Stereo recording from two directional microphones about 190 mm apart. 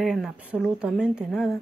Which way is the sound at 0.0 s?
Centre (ahead or behind).